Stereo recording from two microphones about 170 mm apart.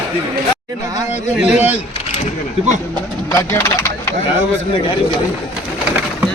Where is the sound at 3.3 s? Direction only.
15° left (ahead or behind).